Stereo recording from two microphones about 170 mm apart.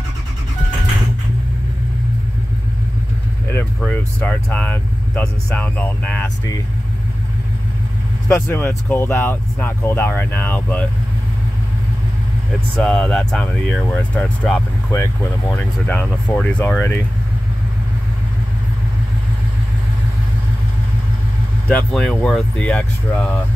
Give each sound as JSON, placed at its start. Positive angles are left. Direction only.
{"t": 3.5, "sound": "speech", "side_deg": 10}
{"t": 8.3, "sound": "speech", "side_deg": 15}
{"t": 12.7, "sound": "speech", "side_deg": 5}
{"t": 14.9, "sound": "speech", "side_deg": 20}
{"t": 21.6, "sound": "speech", "side_deg": 5}